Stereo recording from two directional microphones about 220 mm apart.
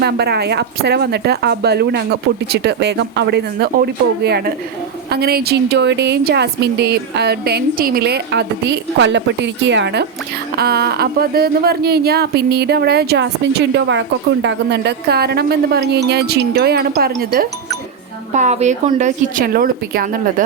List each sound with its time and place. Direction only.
0.0 s speech: 45° right (ahead or behind)
18.3 s speech: 30° right (ahead or behind)